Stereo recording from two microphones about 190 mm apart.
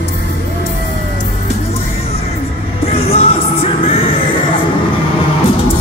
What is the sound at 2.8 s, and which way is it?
Music, 30° left (ahead or behind).